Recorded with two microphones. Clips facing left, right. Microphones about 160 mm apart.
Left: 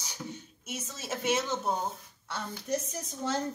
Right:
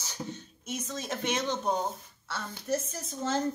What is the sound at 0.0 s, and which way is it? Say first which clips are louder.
A woman's voice: right 2 dB; 10° left (ahead or behind).